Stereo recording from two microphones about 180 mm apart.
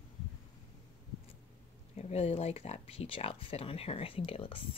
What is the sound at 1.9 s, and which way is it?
Speech, 35° left (ahead or behind).